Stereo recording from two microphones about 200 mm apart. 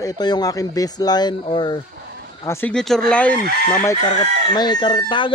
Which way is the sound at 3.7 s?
15° left (ahead or behind).